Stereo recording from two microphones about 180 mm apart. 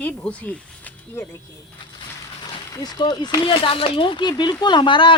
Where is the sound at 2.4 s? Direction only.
20° left (ahead or behind).